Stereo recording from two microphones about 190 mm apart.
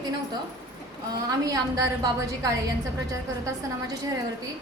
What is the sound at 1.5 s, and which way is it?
A woman's voice, 20° right (ahead or behind).